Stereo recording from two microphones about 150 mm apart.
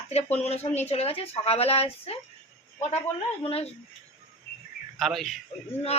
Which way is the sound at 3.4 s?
40° left (ahead or behind).